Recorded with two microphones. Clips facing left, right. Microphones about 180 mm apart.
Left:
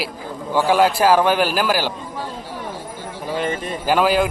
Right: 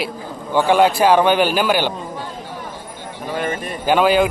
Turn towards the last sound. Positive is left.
turn(degrees=0)  # may be behind; listen again after turning